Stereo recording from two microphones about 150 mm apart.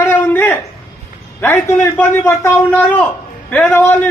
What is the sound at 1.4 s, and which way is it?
A man's voice, 15° left (ahead or behind).